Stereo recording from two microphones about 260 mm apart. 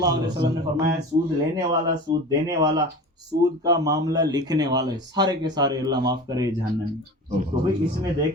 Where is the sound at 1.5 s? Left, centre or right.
Centre.